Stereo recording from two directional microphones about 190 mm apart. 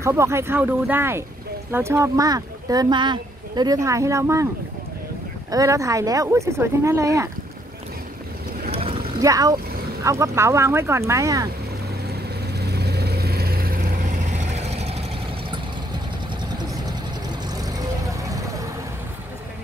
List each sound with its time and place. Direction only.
0.0 s speech: 15° right (ahead or behind)
5.5 s speech: 15° right (ahead or behind)
8.7 s boat: 30° right (ahead or behind)
9.2 s speech: 20° right (ahead or behind)
12.5 s vehicle: 60° right (ahead or behind); by 15.0 s 35° right (ahead or behind)
17.6 s vehicle: 20° right (ahead or behind)